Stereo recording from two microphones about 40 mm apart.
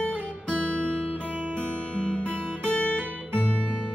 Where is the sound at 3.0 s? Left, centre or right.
Right.